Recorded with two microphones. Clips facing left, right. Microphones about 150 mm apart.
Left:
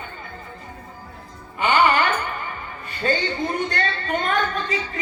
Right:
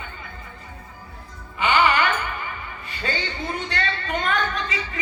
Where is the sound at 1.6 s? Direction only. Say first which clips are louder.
Left 2 dB; 45° left (ahead or behind).